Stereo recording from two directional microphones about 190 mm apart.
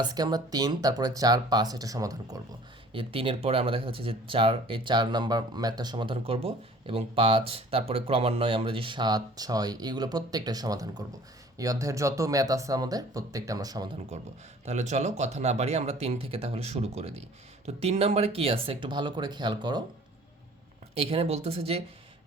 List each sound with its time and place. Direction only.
0.0 s speech: 20° right (ahead or behind)
14.6 s speech: 35° right (ahead or behind)
20.9 s speech: 30° right (ahead or behind)